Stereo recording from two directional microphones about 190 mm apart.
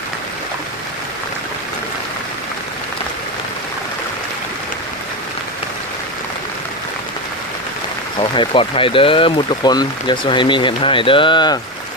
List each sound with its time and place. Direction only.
8.2 s speech: 25° left (ahead or behind)